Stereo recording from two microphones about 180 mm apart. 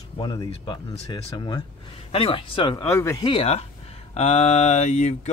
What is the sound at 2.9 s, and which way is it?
Speech, 15° left (ahead or behind).